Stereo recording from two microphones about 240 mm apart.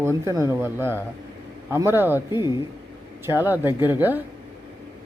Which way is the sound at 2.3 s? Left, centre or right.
Centre.